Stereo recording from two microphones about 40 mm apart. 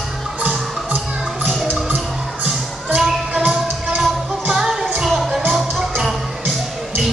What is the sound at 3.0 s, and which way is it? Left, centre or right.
Music, centre.